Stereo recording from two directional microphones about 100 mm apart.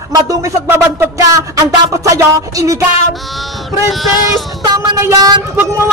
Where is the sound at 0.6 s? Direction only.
25° right (ahead or behind).